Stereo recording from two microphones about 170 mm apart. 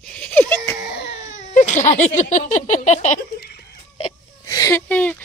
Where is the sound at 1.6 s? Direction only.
45° left (ahead or behind).